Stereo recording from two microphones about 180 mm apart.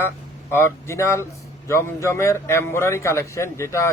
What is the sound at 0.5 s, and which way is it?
A man's voice, 15° left (ahead or behind).